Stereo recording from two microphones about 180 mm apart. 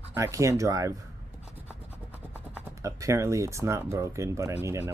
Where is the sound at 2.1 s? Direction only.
15° right (ahead or behind).